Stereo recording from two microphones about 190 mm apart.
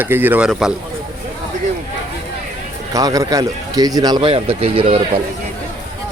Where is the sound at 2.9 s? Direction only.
20° right (ahead or behind).